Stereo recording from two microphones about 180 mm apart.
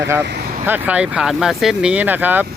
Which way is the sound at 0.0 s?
15° right (ahead or behind).